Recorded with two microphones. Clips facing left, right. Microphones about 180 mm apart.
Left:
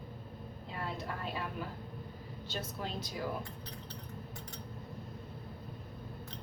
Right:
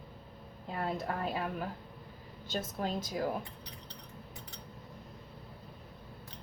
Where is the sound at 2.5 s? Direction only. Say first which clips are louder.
Right 5 dB; 45° right (ahead or behind).